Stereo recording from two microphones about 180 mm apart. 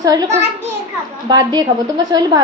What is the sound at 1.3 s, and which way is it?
Speech, 25° right (ahead or behind).